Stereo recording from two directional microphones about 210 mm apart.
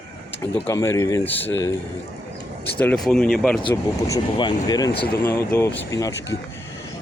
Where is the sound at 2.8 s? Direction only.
5° left (ahead or behind).